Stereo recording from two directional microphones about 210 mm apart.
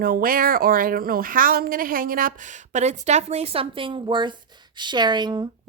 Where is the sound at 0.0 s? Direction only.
45° right (ahead or behind).